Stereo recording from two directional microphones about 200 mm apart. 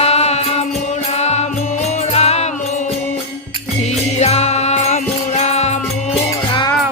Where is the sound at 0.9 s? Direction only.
35° left (ahead or behind).